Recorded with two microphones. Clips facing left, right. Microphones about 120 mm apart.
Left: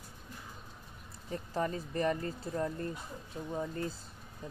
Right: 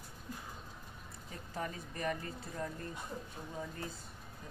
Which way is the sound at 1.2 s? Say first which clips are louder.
Left 7 dB; 35° left (ahead or behind).